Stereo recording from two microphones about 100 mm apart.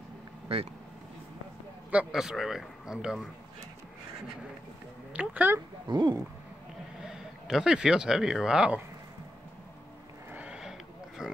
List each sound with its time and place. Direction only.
1.9 s a man's voice: 10° right (ahead or behind)
5.1 s speech: 15° right (ahead or behind)
5.9 s speech: 50° right (ahead or behind)
7.0 s speech: 5° right (ahead or behind)
10.3 s a sound: 10° right (ahead or behind)